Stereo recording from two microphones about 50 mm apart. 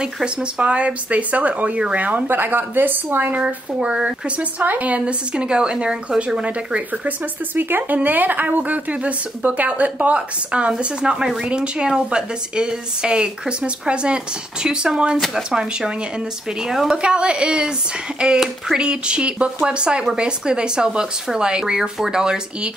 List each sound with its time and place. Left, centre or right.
0.0 s a woman's voice: right
2.2 s speech: right
3.3 s speech: right
7.5 s a woman's voice: right; by 16.9 s centre
16.9 s speech: centre